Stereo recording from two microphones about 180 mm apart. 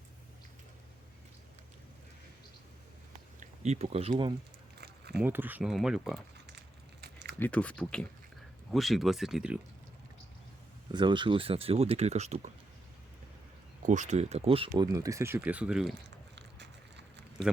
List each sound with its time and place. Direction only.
3.4 s speech: 40° right (ahead or behind)
5.1 s speech: 10° right (ahead or behind)
7.0 s a sound: 70° right (ahead or behind)
7.3 s speech: 10° left (ahead or behind)
10.9 s speech: 25° right (ahead or behind)
13.8 s speech: 40° right (ahead or behind)
14.9 s speech: 20° right (ahead or behind)
16.0 s a sound: 75° right (ahead or behind)